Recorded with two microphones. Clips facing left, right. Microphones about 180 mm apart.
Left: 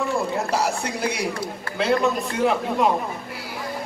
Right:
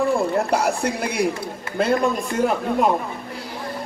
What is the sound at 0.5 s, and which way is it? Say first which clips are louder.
A man's voice: right 3 dB; 55° right (ahead or behind).